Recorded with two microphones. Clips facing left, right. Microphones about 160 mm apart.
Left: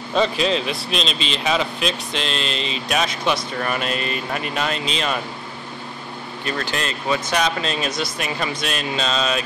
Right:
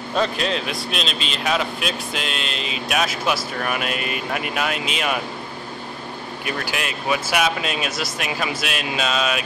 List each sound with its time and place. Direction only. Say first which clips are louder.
0.1 s speech: left 3 dB; centre (ahead or behind)
6.4 s speech: left 2 dB; 10° right (ahead or behind)